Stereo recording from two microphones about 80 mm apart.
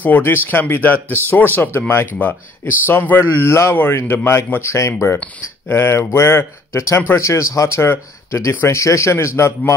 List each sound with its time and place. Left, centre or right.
0.0 s speech: left